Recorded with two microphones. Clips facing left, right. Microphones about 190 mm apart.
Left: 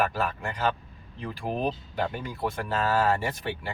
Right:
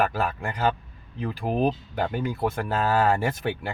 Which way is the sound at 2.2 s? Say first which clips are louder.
Right 5 dB; 55° right (ahead or behind).